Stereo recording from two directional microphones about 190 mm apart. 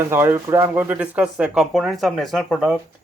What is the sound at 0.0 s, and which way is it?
Speech, 10° right (ahead or behind).